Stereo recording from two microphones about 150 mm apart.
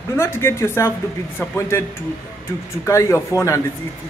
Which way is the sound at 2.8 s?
20° left (ahead or behind).